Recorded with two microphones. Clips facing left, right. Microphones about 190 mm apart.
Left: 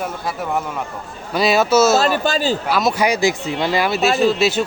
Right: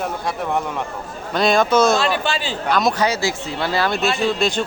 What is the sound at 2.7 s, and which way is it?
A man's voice, 5° left (ahead or behind).